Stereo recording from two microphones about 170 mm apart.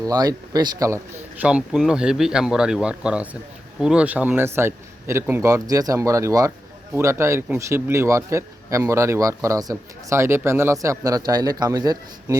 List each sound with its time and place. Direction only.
0.0 s speech: 20° right (ahead or behind)
1.4 s a man's voice: 5° right (ahead or behind)